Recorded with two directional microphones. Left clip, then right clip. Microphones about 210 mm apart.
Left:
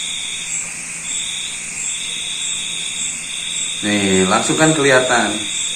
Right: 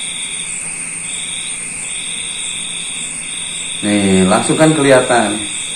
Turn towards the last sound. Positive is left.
turn(degrees=-20)  # may be behind; listen again after turning